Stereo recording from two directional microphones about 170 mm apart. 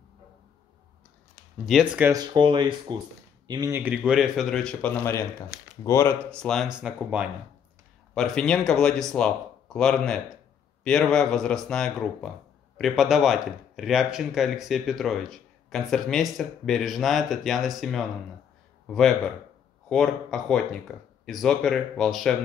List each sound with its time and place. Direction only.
1.7 s speech: centre (ahead or behind)
2.0 s speech: 25° right (ahead or behind)
3.7 s speech: 10° right (ahead or behind); by 6.1 s 15° left (ahead or behind)
6.3 s speech: 5° left (ahead or behind)
8.1 s speech: 5° left (ahead or behind)
19.9 s speech: centre (ahead or behind)